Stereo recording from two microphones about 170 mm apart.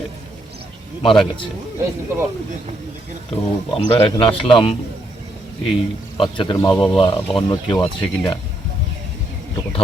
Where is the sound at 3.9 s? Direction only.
35° left (ahead or behind).